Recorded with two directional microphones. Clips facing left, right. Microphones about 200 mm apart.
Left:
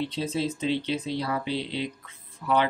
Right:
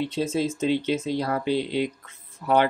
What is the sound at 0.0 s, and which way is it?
Speech, 45° right (ahead or behind).